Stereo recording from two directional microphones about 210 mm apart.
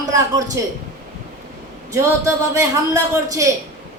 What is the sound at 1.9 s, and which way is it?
A woman's voice, 15° right (ahead or behind).